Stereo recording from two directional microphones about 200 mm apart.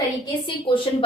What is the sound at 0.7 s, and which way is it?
Speech, 25° left (ahead or behind).